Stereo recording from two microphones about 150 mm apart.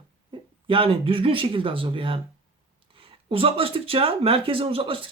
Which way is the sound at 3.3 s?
40° right (ahead or behind).